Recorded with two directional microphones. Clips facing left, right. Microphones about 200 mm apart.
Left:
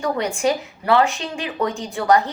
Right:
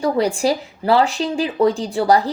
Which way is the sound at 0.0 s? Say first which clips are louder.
Right 3 dB; 35° right (ahead or behind).